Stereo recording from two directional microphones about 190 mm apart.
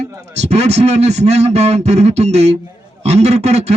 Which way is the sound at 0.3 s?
35° right (ahead or behind).